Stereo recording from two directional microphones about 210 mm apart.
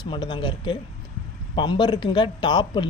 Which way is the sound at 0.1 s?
20° left (ahead or behind).